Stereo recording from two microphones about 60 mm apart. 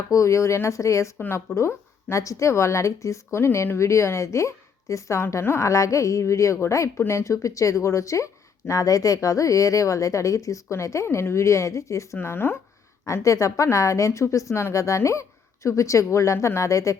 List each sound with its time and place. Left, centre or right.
0.1 s speech: left
5.2 s speech: left
12.2 s speech: left
13.2 s speech: left